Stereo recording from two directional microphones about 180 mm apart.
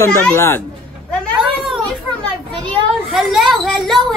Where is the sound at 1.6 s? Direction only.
Centre (ahead or behind).